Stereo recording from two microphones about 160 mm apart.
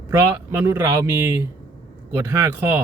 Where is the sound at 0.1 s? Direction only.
15° right (ahead or behind).